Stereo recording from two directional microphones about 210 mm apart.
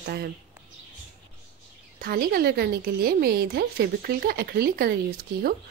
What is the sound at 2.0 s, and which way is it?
A woman's voice, 45° right (ahead or behind).